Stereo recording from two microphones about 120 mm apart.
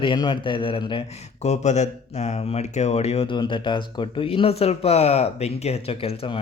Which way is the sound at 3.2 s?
40° left (ahead or behind).